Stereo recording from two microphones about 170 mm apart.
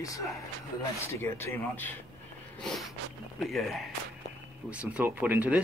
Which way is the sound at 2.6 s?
Centre (ahead or behind).